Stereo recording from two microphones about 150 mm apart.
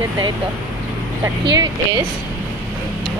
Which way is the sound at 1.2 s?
25° right (ahead or behind).